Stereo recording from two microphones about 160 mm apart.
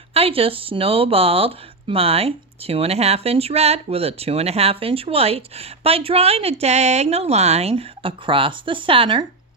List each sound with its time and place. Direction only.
0.1 s speech: 35° right (ahead or behind)